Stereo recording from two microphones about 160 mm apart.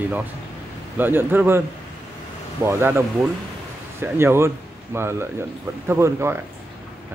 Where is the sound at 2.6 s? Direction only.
15° right (ahead or behind).